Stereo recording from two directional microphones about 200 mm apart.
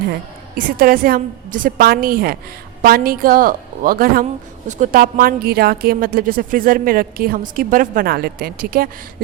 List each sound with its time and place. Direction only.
0.5 s a woman's voice: 45° right (ahead or behind)